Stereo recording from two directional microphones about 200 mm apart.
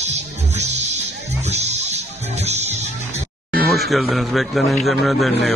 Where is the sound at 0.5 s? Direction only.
35° right (ahead or behind).